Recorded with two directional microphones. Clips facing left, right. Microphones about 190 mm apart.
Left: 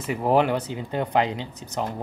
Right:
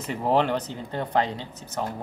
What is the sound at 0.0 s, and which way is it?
Speech, 10° left (ahead or behind).